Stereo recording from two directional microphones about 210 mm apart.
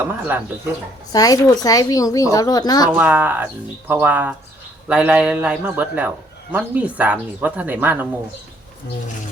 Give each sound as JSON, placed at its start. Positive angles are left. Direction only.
{"t": 0.0, "sound": "a man's voice", "side_deg": -10}
{"t": 1.1, "sound": "speech", "side_deg": 15}
{"t": 2.9, "sound": "a man's voice", "side_deg": -5}